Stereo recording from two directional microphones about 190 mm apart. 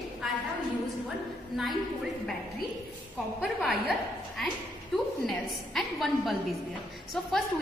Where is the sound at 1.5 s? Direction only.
Centre (ahead or behind).